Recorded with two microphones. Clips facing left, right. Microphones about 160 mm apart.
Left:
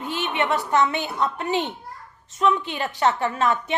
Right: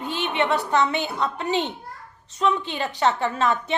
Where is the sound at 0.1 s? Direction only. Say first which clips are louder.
Right 1 dB; 30° right (ahead or behind).